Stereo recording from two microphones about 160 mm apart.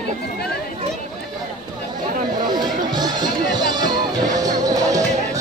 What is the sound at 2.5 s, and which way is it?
Music, 25° right (ahead or behind).